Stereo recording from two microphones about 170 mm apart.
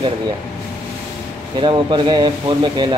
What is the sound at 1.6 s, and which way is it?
Speech, 25° right (ahead or behind).